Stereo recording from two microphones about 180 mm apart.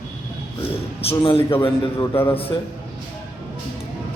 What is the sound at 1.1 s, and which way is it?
Speech, 30° left (ahead or behind).